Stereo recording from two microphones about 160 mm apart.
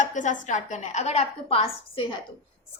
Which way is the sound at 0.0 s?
50° left (ahead or behind).